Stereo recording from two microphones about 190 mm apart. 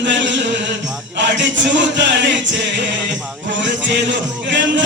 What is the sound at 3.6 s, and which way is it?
Speech, 70° right (ahead or behind).